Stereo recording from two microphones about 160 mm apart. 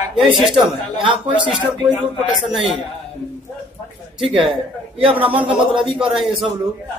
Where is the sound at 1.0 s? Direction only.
30° right (ahead or behind).